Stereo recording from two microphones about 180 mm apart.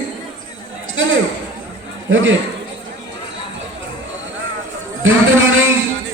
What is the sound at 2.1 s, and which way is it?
Speech, 90° right.